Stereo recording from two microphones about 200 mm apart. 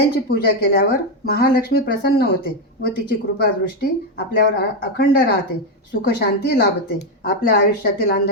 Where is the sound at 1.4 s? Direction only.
50° left (ahead or behind).